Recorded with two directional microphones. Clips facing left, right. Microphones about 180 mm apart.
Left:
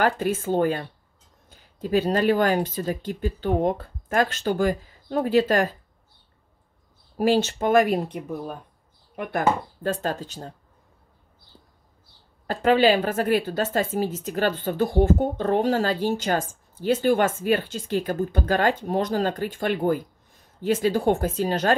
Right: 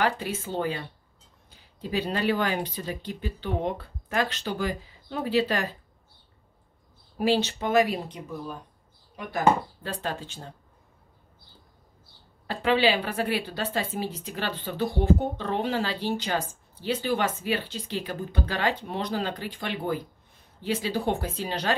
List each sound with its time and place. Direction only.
0.0 s a woman's voice: 50° left (ahead or behind)
7.2 s a woman's voice: 45° left (ahead or behind)
9.8 s speech: 40° left (ahead or behind)
12.4 s a woman's voice: 45° left (ahead or behind)